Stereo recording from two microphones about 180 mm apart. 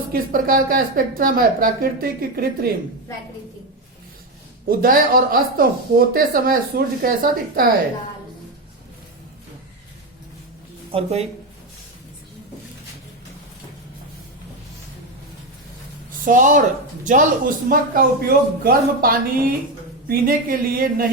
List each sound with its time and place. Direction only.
0.1 s speech: 55° right (ahead or behind)
4.7 s speech: 50° right (ahead or behind)
10.9 s speech: 35° right (ahead or behind)
16.2 s speech: 50° right (ahead or behind)